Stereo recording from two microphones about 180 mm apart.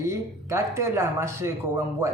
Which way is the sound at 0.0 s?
15° right (ahead or behind).